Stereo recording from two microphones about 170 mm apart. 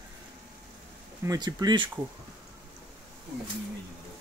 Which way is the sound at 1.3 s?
25° right (ahead or behind).